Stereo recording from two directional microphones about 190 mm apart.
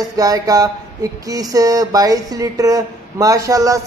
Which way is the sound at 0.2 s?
20° right (ahead or behind).